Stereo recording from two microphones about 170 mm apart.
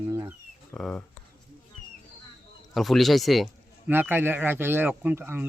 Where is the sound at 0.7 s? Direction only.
5° left (ahead or behind).